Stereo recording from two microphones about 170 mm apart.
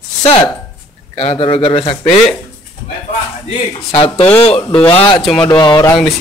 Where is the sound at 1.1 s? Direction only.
35° left (ahead or behind).